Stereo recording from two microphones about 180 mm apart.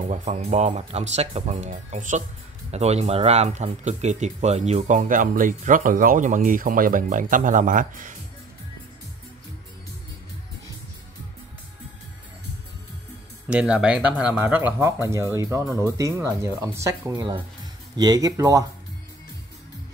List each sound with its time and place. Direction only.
0.1 s speech: 40° right (ahead or behind)
13.5 s speech: 5° right (ahead or behind)